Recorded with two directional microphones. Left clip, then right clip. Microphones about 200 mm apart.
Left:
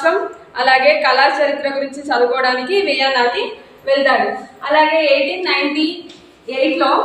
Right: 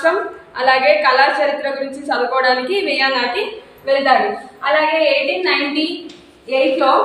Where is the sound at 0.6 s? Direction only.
15° left (ahead or behind).